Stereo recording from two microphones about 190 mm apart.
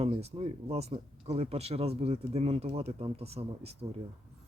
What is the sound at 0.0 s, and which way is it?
Speech, 30° right (ahead or behind).